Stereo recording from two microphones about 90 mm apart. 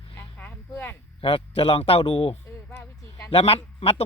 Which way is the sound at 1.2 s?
90° left.